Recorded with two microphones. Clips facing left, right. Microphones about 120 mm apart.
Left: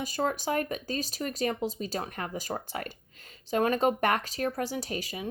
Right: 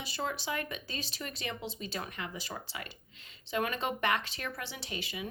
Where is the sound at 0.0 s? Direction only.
45° left (ahead or behind).